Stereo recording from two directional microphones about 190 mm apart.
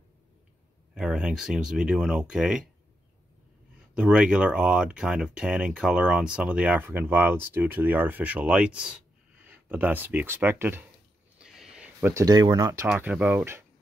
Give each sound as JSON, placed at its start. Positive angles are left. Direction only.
{"t": 0.9, "sound": "speech", "side_deg": -5}
{"t": 3.9, "sound": "speech", "side_deg": -5}
{"t": 11.3, "sound": "a sound", "side_deg": 0}
{"t": 12.8, "sound": "speech", "side_deg": -5}